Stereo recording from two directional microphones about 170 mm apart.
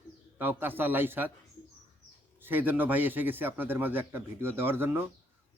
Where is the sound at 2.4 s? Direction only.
10° right (ahead or behind).